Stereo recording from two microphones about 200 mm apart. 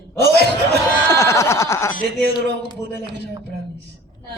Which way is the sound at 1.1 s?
15° left (ahead or behind).